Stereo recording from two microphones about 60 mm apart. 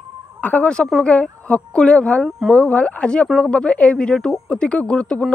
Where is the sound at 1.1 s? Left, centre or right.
Centre.